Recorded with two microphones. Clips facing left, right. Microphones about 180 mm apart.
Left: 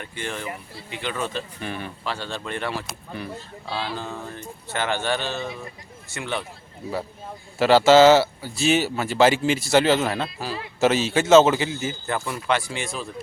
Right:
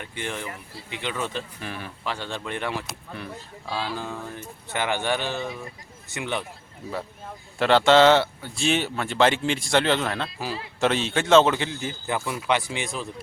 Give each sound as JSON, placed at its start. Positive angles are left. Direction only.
{"t": 0.0, "sound": "speech", "side_deg": -15}
{"t": 1.6, "sound": "speech", "side_deg": 0}
{"t": 2.0, "sound": "speech", "side_deg": -15}
{"t": 7.6, "sound": "speech", "side_deg": 5}
{"t": 12.0, "sound": "speech", "side_deg": -10}